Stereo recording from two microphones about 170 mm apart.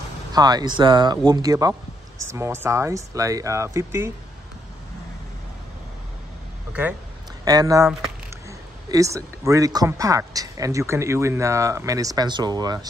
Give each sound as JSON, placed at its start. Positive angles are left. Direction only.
{"t": 0.3, "sound": "speech", "side_deg": -25}
{"t": 6.7, "sound": "speech", "side_deg": -10}
{"t": 7.4, "sound": "speech", "side_deg": -20}